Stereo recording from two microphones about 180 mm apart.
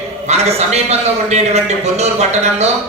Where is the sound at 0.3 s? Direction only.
35° right (ahead or behind).